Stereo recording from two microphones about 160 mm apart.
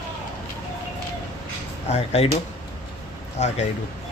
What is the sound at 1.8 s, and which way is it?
Speech, 40° left (ahead or behind).